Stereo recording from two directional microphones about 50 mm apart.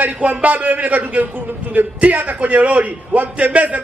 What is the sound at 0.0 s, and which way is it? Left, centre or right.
A man's voice, right.